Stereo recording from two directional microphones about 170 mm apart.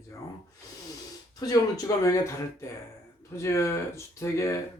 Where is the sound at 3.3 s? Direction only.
15° left (ahead or behind).